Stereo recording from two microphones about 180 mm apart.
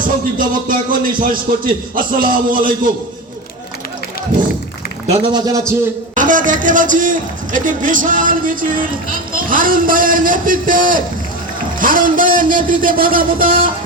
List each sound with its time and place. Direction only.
0.3 s a man's voice: 50° right (ahead or behind)
5.2 s a man's voice: 25° right (ahead or behind)
6.1 s a man's voice: 45° right (ahead or behind)